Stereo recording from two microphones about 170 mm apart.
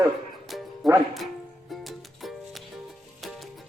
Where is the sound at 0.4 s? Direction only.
Centre (ahead or behind).